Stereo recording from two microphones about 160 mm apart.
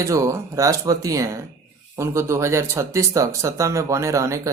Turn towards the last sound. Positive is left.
turn(degrees=-20)  # may be behind; listen again after turning